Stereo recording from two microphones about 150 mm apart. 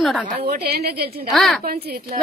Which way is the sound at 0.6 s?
90° right.